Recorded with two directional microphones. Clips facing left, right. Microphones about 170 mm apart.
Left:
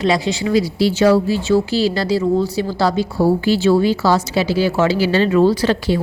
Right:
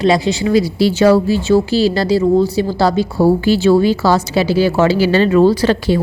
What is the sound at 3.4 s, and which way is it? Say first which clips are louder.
Speech: right 3 dB; 55° right (ahead or behind).